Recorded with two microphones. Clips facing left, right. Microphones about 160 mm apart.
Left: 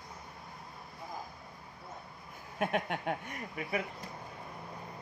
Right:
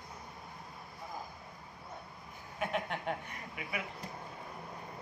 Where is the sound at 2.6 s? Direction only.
50° left (ahead or behind).